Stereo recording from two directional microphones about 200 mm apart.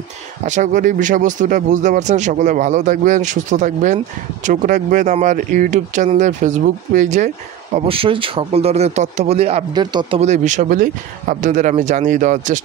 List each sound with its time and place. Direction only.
0.5 s speech: 40° right (ahead or behind); by 10.2 s 20° right (ahead or behind)
10.2 s speech: 35° right (ahead or behind)